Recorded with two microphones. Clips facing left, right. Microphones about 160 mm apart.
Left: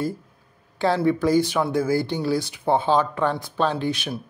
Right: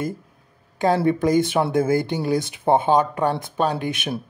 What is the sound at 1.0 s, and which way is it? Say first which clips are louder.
Speech: right 1 dB; 20° right (ahead or behind).